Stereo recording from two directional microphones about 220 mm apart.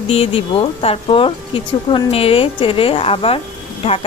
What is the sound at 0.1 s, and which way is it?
Speech, 25° left (ahead or behind).